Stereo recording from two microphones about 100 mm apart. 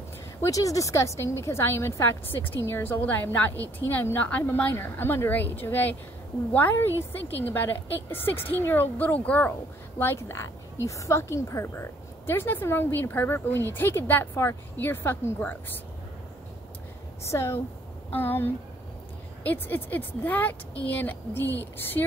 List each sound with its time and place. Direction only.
0.4 s a woman's voice: 35° left (ahead or behind)
17.3 s a woman's voice: 25° left (ahead or behind)